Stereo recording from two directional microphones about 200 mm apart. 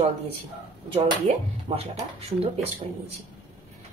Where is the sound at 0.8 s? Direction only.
30° right (ahead or behind).